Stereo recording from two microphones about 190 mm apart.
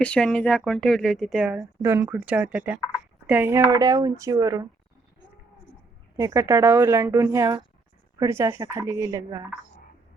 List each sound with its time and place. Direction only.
0.0 s speech: 5° left (ahead or behind)
1.8 s speech: 15° right (ahead or behind)
6.1 s speech: 15° right (ahead or behind)